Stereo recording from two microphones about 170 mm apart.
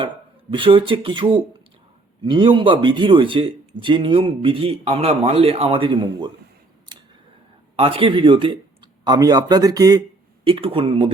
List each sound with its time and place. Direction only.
0.5 s a man's voice: 30° right (ahead or behind)
7.8 s a man's voice: 30° right (ahead or behind)
10.4 s speech: 35° right (ahead or behind)